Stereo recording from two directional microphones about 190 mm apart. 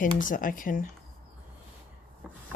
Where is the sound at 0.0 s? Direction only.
45° left (ahead or behind).